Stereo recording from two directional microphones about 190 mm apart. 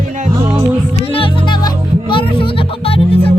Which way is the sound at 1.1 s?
30° left (ahead or behind).